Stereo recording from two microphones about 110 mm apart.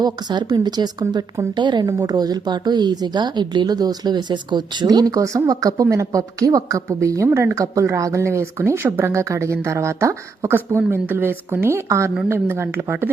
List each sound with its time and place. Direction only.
0.0 s a woman's voice: 40° right (ahead or behind); by 13.1 s 15° right (ahead or behind)